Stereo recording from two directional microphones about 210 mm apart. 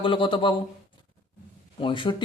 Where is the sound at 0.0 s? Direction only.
25° left (ahead or behind).